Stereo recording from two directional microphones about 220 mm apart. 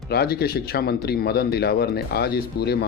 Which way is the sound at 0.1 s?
45° left (ahead or behind).